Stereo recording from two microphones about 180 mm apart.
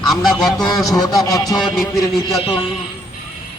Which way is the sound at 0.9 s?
20° left (ahead or behind).